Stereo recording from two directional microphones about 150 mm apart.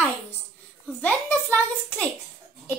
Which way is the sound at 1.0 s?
10° left (ahead or behind).